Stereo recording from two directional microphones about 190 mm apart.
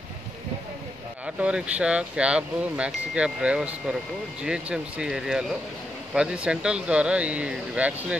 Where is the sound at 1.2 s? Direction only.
5° right (ahead or behind).